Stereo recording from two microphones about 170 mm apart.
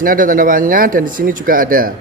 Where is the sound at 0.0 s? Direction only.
55° right (ahead or behind).